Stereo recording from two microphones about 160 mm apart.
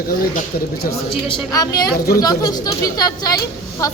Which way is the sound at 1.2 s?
25° left (ahead or behind).